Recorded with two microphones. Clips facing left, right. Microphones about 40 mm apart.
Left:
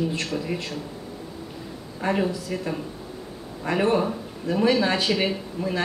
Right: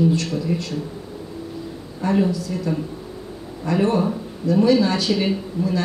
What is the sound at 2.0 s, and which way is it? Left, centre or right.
Speech, left.